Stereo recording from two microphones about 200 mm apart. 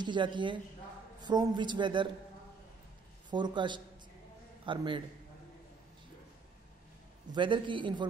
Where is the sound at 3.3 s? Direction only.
20° right (ahead or behind).